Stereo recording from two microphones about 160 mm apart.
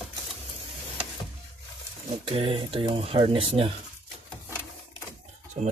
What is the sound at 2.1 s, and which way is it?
Speech, 35° right (ahead or behind).